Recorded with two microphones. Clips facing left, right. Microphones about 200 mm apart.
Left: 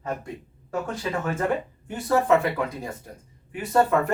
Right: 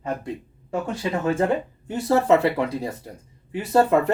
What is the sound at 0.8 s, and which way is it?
Speech, 25° right (ahead or behind).